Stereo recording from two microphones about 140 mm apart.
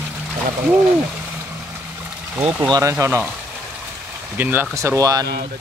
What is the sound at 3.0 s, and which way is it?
Speech, 15° right (ahead or behind).